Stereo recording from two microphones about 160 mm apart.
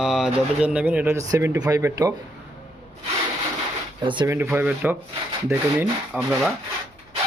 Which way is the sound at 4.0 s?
30° right (ahead or behind).